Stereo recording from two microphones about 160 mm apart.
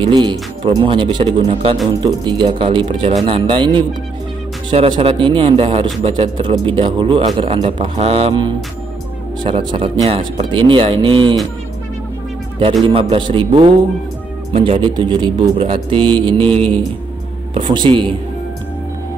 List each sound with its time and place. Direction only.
0.0 s speech: 30° right (ahead or behind)
13.1 s speech: 35° right (ahead or behind)